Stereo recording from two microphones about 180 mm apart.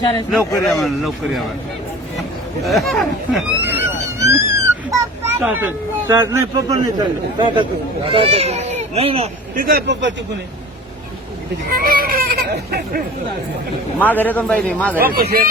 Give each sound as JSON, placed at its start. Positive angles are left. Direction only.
{"t": 0.7, "sound": "speech", "side_deg": 0}
{"t": 2.6, "sound": "speech", "side_deg": 0}
{"t": 3.6, "sound": "a sound", "side_deg": -15}
{"t": 5.4, "sound": "speech", "side_deg": -10}
{"t": 7.3, "sound": "speech", "side_deg": -25}
{"t": 9.6, "sound": "speech", "side_deg": -55}
{"t": 11.7, "sound": "speech", "side_deg": -55}
{"t": 14.0, "sound": "a man's voice", "side_deg": 10}
{"t": 15.0, "sound": "a man's voice", "side_deg": -60}